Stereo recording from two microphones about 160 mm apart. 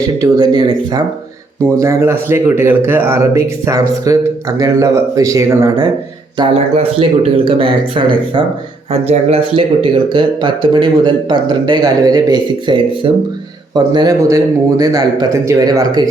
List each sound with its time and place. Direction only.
0.2 s speech: 25° right (ahead or behind)